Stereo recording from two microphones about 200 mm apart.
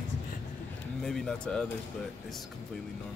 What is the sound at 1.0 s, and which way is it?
Speech, 5° left (ahead or behind).